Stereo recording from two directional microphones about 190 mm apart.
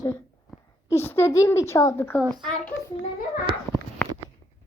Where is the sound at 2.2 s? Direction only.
20° right (ahead or behind).